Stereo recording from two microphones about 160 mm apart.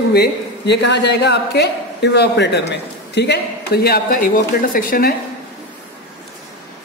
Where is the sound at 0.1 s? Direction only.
85° left; by 5.1 s 65° left (ahead or behind).